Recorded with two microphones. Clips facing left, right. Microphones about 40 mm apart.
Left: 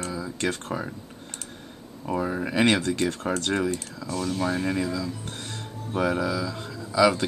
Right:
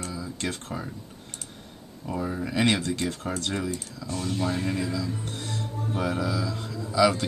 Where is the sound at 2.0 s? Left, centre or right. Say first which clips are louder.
Left 3 dB; left.